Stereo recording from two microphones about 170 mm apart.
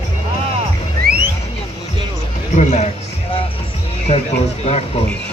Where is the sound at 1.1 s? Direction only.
65° right (ahead or behind).